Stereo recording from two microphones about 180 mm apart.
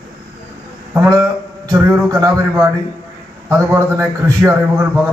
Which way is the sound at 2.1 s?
20° right (ahead or behind).